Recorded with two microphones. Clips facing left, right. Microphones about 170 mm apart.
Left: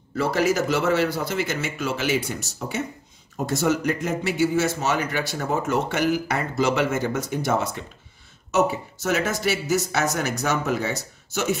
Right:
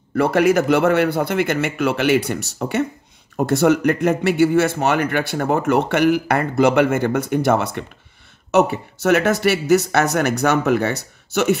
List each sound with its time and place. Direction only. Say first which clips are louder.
0.1 s speech: right 6 dB; 60° right (ahead or behind)